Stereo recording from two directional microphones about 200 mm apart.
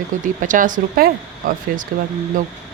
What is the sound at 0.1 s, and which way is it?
Speech, 40° right (ahead or behind).